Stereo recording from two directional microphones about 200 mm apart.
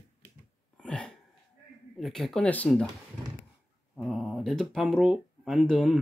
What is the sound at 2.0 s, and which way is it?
Speech, centre (ahead or behind).